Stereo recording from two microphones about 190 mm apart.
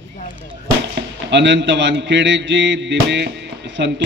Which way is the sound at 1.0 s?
65° right (ahead or behind).